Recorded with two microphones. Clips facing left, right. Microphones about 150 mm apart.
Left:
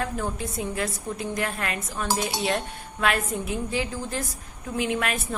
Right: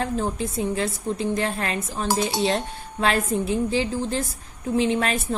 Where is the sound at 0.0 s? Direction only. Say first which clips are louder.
Right 4 dB; 30° right (ahead or behind).